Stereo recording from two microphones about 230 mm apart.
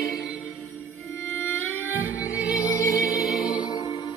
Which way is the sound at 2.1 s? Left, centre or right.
Centre.